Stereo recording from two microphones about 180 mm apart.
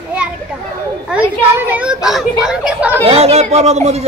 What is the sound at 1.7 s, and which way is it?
Speech, 5° right (ahead or behind).